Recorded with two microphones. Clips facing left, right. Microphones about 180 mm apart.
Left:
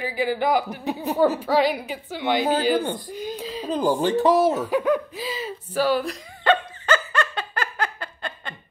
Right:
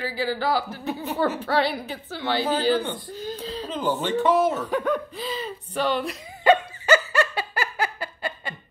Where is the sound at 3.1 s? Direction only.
10° left (ahead or behind).